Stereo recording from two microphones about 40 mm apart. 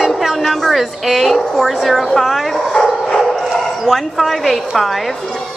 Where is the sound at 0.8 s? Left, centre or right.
Centre.